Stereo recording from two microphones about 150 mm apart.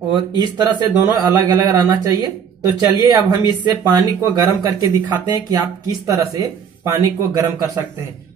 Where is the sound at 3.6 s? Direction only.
25° right (ahead or behind).